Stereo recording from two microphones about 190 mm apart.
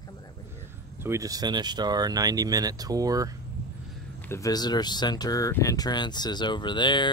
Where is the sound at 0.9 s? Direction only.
15° right (ahead or behind).